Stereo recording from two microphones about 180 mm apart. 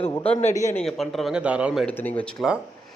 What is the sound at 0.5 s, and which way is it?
Speech, 20° left (ahead or behind).